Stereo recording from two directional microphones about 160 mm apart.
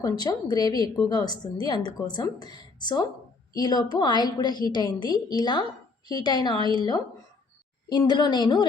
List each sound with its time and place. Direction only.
0.0 s a woman's voice: 20° left (ahead or behind)
7.9 s a woman's voice: 25° left (ahead or behind)